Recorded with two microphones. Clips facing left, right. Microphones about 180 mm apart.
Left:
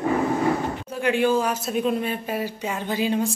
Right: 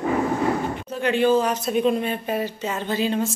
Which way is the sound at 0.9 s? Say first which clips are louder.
Right 2 dB; 10° left (ahead or behind).